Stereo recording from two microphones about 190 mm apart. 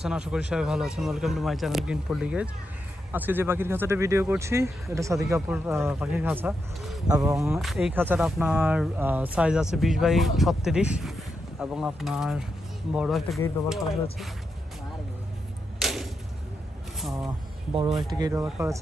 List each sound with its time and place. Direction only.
0.0 s speech: 5° right (ahead or behind)
7.1 s speech: 20° right (ahead or behind)
7.3 s speech: centre (ahead or behind)
15.8 s a sound: centre (ahead or behind)
17.7 s speech: 25° right (ahead or behind)